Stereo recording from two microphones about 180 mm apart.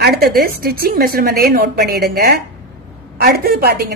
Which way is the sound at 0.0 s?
55° right (ahead or behind).